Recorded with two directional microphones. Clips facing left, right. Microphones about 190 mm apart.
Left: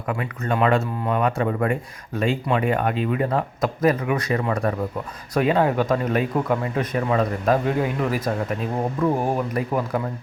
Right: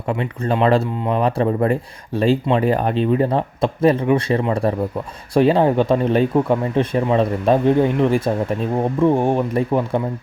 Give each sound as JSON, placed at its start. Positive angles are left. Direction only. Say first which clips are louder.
{"t": 0.1, "sound": "speech", "louder": "right 4 dB", "side_deg": -30}